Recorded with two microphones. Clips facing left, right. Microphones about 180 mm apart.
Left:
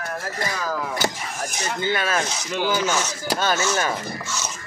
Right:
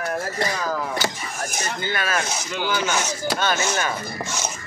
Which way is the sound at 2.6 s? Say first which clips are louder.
Left 1 dB; 40° left (ahead or behind).